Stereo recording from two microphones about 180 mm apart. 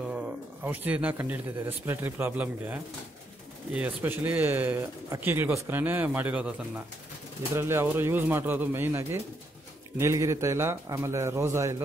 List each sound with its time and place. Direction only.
0.0 s a man's voice: 5° right (ahead or behind)